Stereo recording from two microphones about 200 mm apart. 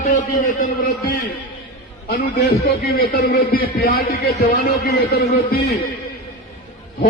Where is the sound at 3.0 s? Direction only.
50° left (ahead or behind).